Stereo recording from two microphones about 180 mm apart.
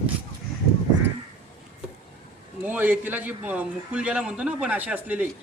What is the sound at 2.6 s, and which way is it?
A man's voice, 10° right (ahead or behind).